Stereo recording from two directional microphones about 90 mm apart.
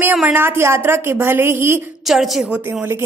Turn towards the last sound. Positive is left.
turn(degrees=-25)  # may be behind; listen again after turning